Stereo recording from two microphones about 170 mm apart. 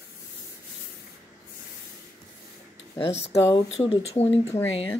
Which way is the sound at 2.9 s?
35° left (ahead or behind).